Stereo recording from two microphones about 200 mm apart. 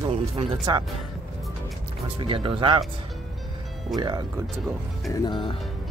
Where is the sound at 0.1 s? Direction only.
25° right (ahead or behind).